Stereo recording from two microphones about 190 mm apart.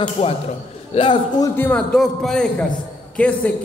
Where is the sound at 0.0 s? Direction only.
35° left (ahead or behind).